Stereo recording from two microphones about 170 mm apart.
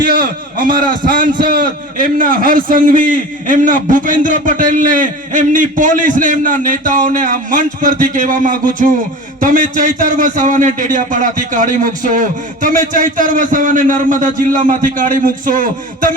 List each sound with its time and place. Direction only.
0.0 s a man's voice: 55° right (ahead or behind)